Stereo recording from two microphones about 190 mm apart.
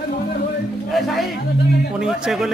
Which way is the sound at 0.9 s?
Centre (ahead or behind).